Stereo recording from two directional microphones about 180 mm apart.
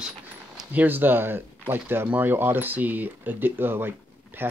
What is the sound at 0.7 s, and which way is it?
Speech, 10° right (ahead or behind).